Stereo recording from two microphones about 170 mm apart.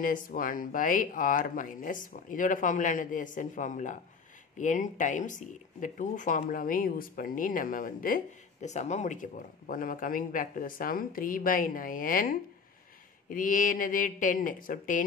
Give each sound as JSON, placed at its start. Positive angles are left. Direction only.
{"t": 0.0, "sound": "speech", "side_deg": 50}